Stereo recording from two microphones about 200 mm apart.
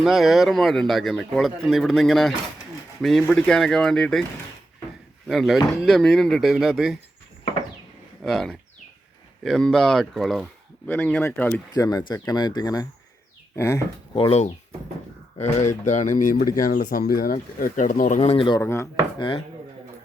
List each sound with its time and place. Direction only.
0.0 s speech: centre (ahead or behind)
5.3 s speech: centre (ahead or behind)
8.2 s speech: centre (ahead or behind)
14.2 s speech: 30° left (ahead or behind)
18.6 s speech: 15° left (ahead or behind)